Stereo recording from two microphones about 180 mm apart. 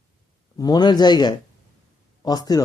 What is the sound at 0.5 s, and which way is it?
Speech, 20° left (ahead or behind).